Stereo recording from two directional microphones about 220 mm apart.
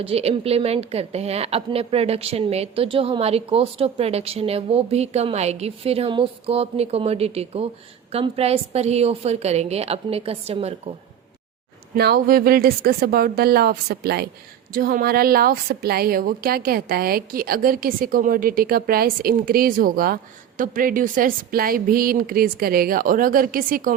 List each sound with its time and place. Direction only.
0.0 s a woman's voice: 25° right (ahead or behind)
11.9 s a woman's voice: 45° right (ahead or behind)